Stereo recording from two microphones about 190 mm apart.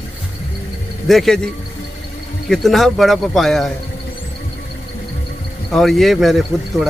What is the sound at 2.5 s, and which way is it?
Speech, centre (ahead or behind).